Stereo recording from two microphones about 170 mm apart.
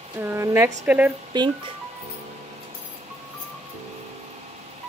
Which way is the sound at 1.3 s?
25° right (ahead or behind).